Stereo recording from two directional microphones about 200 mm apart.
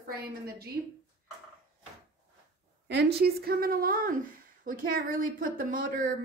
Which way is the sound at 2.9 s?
55° right (ahead or behind).